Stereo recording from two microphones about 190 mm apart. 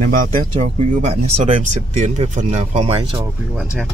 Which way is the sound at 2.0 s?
35° right (ahead or behind).